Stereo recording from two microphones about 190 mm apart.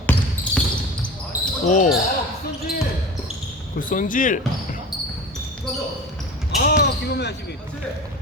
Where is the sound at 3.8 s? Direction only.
45° left (ahead or behind).